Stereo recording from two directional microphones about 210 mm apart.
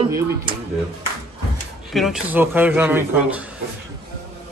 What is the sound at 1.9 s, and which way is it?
A man's voice, centre (ahead or behind).